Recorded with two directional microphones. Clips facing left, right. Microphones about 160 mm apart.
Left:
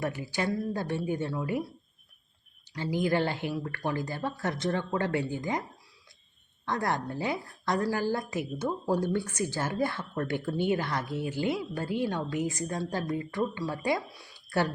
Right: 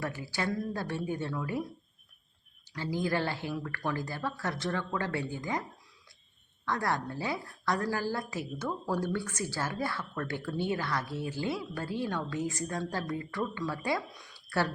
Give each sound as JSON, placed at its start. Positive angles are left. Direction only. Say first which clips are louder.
{"t": 0.0, "sound": "speech", "louder": "left 3 dB", "side_deg": 20}
{"t": 2.7, "sound": "a woman's voice", "louder": "left 4 dB", "side_deg": 15}
{"t": 6.7, "sound": "a woman's voice", "louder": "left 2 dB", "side_deg": 20}